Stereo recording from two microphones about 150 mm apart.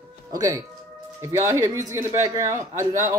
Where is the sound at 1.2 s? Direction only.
20° right (ahead or behind).